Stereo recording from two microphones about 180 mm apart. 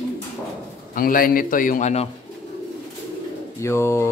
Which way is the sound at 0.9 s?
50° left (ahead or behind).